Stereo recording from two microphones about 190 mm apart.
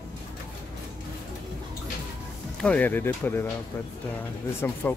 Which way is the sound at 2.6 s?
10° left (ahead or behind).